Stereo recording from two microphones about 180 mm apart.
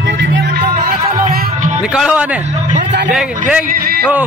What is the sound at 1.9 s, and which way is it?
Speech, centre (ahead or behind).